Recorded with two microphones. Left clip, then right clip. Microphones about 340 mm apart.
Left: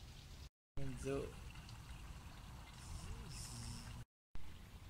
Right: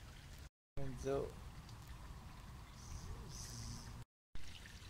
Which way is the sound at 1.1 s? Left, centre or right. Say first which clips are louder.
Right 3 dB; right.